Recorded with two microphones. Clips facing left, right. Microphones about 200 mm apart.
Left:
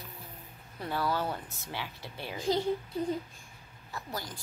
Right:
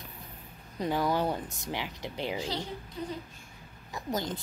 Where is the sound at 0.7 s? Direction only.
15° right (ahead or behind).